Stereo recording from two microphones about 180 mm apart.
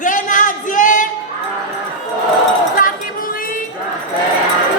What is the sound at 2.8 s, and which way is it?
Female singing, 50° left (ahead or behind).